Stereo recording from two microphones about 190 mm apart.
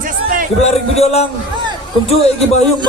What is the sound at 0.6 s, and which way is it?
A man's voice, 35° left (ahead or behind).